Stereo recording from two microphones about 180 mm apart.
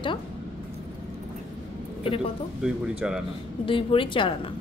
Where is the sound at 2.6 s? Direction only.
5° right (ahead or behind).